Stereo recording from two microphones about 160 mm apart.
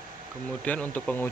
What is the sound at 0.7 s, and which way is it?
Speech, 10° left (ahead or behind).